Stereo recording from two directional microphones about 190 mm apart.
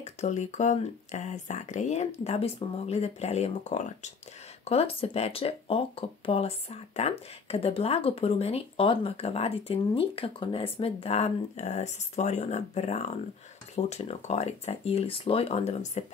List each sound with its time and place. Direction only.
0.0 s speech: 40° left (ahead or behind)